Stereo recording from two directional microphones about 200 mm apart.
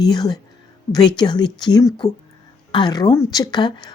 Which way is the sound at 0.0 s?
20° left (ahead or behind).